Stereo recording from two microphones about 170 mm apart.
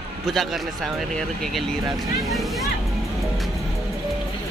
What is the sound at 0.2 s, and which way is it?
Speech, centre (ahead or behind).